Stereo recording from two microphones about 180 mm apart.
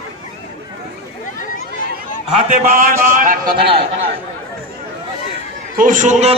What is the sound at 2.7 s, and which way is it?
Speech, 50° right (ahead or behind).